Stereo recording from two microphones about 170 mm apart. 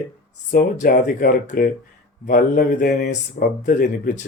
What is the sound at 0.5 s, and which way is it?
Speech, 55° left (ahead or behind).